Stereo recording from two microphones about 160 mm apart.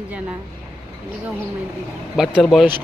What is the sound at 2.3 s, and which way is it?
Speech, 5° left (ahead or behind).